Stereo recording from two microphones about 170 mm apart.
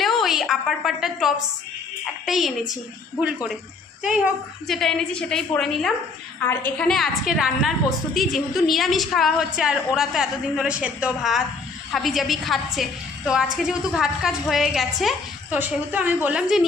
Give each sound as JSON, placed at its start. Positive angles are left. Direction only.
{"t": 0.0, "sound": "a sound", "side_deg": 0}
{"t": 2.2, "sound": "a woman's voice", "side_deg": 0}
{"t": 4.7, "sound": "a woman's voice", "side_deg": 0}